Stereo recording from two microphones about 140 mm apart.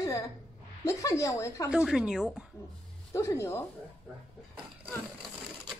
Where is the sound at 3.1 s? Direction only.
20° left (ahead or behind).